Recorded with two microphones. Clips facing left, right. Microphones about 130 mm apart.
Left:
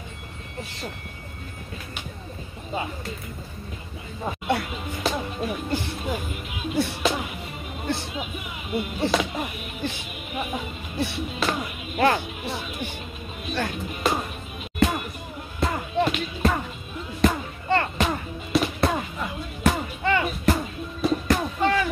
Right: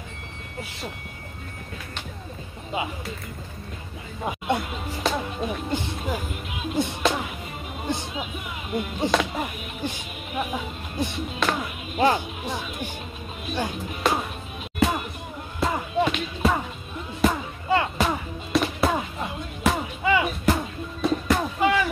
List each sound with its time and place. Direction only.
4.2 s speech: 15° right (ahead or behind)
5.0 s speech: centre (ahead or behind)
5.7 s speech: 20° right (ahead or behind)
6.0 s speech: centre (ahead or behind)
7.0 s music: centre (ahead or behind)
8.1 s speech: centre (ahead or behind)
12.0 s speech: 15° right (ahead or behind)
13.8 s speech: centre (ahead or behind)
14.8 s music: centre (ahead or behind)